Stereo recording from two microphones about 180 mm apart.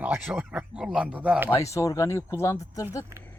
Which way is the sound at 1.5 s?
15° left (ahead or behind).